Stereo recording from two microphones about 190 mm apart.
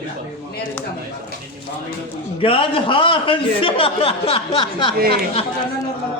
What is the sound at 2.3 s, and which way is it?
A man's voice, 30° left (ahead or behind).